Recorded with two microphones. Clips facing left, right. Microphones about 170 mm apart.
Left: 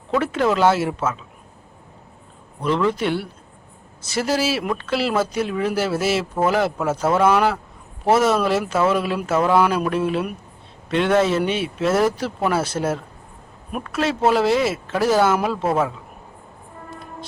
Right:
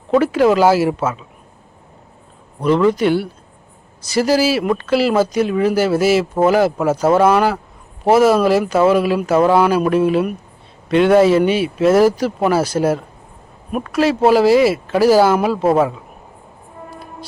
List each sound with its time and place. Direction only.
0.2 s speech: 5° right (ahead or behind)
2.6 s speech: 5° right (ahead or behind)
6.9 s speech: 30° right (ahead or behind)
7.2 s speech: 5° right (ahead or behind)
13.7 s speech: 5° right (ahead or behind)